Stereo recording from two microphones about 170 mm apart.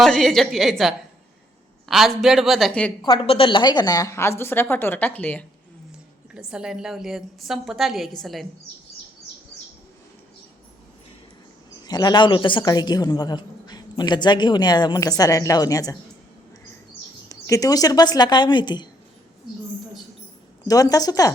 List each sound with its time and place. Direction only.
0.0 s a woman's voice: centre (ahead or behind)
3.0 s a woman's voice: 25° left (ahead or behind); by 5.5 s 10° left (ahead or behind)
6.3 s a woman's voice: 5° right (ahead or behind)
11.9 s a woman's voice: 25° left (ahead or behind)
17.2 s a woman's voice: 20° left (ahead or behind)
20.7 s a woman's voice: 20° left (ahead or behind)